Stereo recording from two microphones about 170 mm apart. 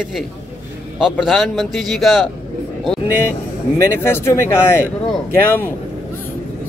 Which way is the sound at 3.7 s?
15° left (ahead or behind).